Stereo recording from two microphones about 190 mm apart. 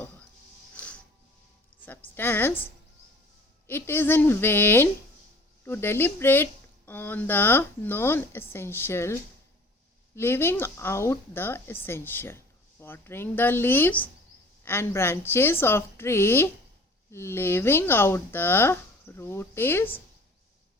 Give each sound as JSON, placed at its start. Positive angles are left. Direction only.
{"t": 0.8, "sound": "music", "side_deg": 5}
{"t": 1.7, "sound": "music", "side_deg": -65}
{"t": 2.1, "sound": "speech", "side_deg": 10}
{"t": 3.7, "sound": "speech", "side_deg": 10}
{"t": 10.2, "sound": "speech", "side_deg": 10}